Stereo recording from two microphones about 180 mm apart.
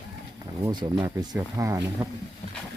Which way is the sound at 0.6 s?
25° right (ahead or behind).